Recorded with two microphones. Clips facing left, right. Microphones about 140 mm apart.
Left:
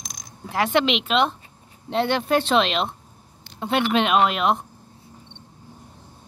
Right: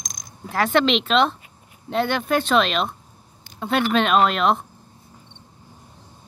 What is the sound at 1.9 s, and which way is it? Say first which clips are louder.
Speech: left 1 dB; 25° left (ahead or behind).